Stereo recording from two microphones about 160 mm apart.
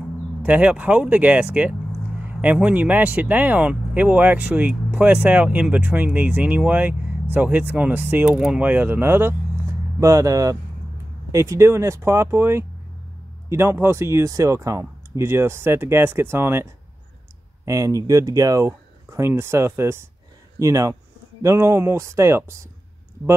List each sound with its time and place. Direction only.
0.4 s speech: 10° right (ahead or behind)
17.6 s speech: 20° right (ahead or behind)